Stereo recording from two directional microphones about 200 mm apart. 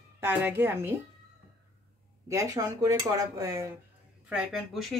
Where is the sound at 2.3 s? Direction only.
15° right (ahead or behind).